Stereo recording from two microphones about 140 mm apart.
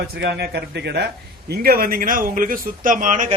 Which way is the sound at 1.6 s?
90° right.